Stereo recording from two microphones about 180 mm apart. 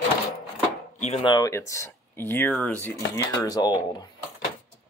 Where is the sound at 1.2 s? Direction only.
20° left (ahead or behind).